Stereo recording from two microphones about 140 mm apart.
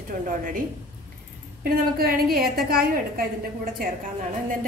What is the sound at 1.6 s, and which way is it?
A woman's voice, 90° right.